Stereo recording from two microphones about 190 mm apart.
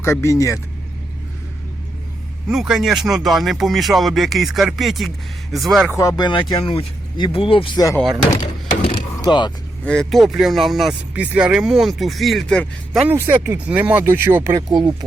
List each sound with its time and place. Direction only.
0.0 s speech: 15° left (ahead or behind)
2.5 s speech: 5° right (ahead or behind)
6.0 s speech: 20° left (ahead or behind)
8.4 s a sound: 25° left (ahead or behind)
9.8 s speech: 5° left (ahead or behind); by 14.9 s 20° right (ahead or behind)